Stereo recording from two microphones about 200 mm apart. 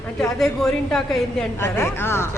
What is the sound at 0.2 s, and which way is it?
A woman's voice, 5° left (ahead or behind).